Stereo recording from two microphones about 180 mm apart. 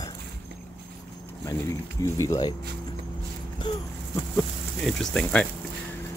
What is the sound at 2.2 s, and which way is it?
Speech, 25° left (ahead or behind).